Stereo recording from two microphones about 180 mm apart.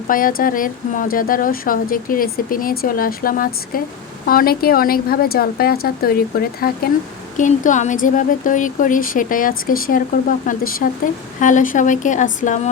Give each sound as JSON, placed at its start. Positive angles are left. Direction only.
{"t": 0.1, "sound": "speech", "side_deg": 50}
{"t": 7.3, "sound": "speech", "side_deg": 45}